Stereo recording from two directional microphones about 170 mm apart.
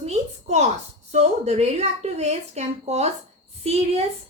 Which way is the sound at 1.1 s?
40° right (ahead or behind).